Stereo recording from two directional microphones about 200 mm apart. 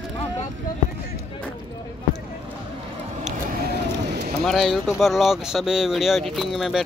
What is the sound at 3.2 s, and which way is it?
Vehicle, 40° right (ahead or behind).